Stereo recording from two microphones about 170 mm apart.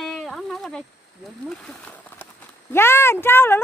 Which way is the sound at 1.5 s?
5° left (ahead or behind).